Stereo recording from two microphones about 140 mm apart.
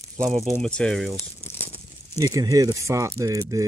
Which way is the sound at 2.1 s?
25° right (ahead or behind).